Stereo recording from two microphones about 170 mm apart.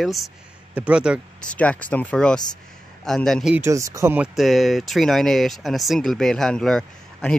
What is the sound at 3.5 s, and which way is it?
Speech, 15° right (ahead or behind).